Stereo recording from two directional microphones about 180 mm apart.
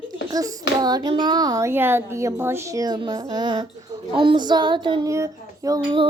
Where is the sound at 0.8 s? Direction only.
20° right (ahead or behind).